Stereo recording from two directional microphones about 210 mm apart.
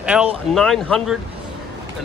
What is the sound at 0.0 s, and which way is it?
Speech, 5° right (ahead or behind).